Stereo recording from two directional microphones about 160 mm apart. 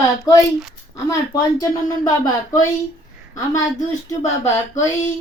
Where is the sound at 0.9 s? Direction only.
20° left (ahead or behind).